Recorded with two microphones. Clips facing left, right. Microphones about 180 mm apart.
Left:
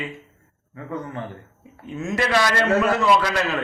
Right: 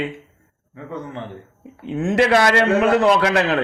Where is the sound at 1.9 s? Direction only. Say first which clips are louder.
Right 7 dB; 65° right (ahead or behind).